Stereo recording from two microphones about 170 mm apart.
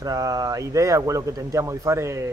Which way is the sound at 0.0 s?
20° right (ahead or behind).